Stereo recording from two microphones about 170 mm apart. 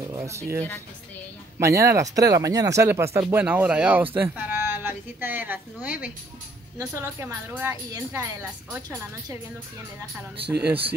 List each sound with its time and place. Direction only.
0.0 s speech: 20° right (ahead or behind)
10.4 s speech: 75° right (ahead or behind)